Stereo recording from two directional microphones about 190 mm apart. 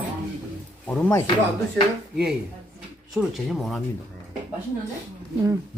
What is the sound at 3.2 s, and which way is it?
Speech, centre (ahead or behind).